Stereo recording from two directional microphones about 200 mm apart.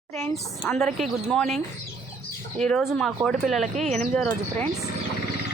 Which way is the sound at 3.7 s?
35° right (ahead or behind).